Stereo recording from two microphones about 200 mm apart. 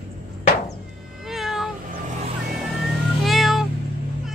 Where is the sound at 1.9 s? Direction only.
40° right (ahead or behind).